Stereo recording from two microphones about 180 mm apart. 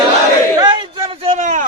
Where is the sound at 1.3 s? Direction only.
45° right (ahead or behind).